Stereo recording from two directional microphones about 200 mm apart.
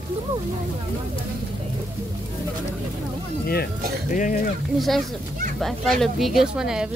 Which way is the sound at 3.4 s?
50° left (ahead or behind).